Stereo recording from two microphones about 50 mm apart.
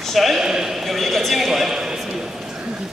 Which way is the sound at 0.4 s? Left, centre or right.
Centre.